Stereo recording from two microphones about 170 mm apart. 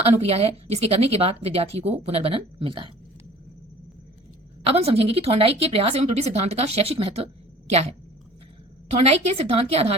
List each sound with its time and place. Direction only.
0.2 s speech: 35° right (ahead or behind)
4.6 s speech: 35° right (ahead or behind)